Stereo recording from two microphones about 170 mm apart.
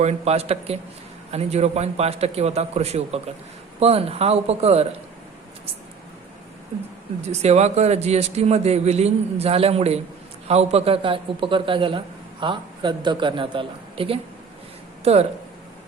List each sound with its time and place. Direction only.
0.0 s a man's voice: 40° right (ahead or behind)
7.2 s a man's voice: 40° right (ahead or behind)